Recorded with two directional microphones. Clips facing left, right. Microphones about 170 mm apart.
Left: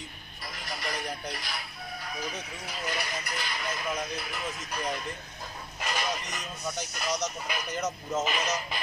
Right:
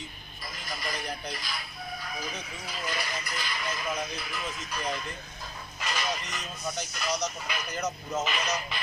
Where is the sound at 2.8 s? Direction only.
60° left (ahead or behind).